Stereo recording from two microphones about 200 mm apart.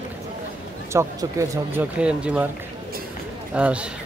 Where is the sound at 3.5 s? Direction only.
5° right (ahead or behind).